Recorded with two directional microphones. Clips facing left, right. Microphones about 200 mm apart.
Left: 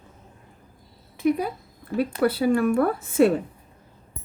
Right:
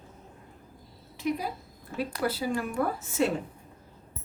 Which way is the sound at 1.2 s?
55° left (ahead or behind).